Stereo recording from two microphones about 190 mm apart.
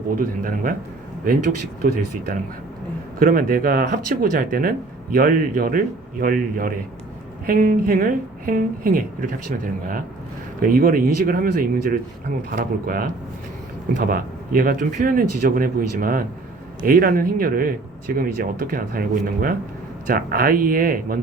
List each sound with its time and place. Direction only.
0.2 s a woman's voice: 45° right (ahead or behind)
1.8 s a woman's voice: 50° right (ahead or behind)